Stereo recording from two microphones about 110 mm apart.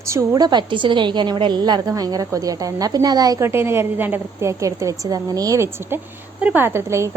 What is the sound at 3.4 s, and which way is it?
A woman's voice, 25° right (ahead or behind).